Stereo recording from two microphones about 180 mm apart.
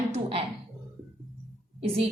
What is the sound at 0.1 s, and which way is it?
Music, 30° right (ahead or behind).